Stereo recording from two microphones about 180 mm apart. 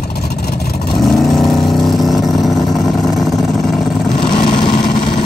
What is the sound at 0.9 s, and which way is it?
Vehicle, centre (ahead or behind).